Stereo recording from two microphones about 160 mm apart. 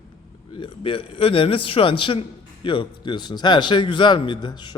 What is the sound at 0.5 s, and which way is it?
A man's voice, 30° left (ahead or behind).